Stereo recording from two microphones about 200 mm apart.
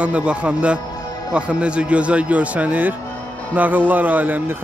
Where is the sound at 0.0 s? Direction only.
5° right (ahead or behind).